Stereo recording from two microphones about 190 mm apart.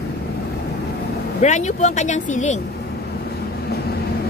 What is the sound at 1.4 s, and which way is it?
Speech, 40° left (ahead or behind).